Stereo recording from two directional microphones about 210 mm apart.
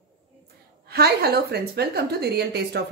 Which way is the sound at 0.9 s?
50° right (ahead or behind).